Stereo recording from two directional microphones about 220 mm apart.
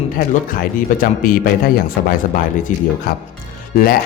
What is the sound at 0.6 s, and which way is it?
Speech, 40° left (ahead or behind).